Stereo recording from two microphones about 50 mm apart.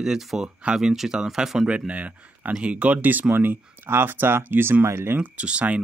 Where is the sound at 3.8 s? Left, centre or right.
Right.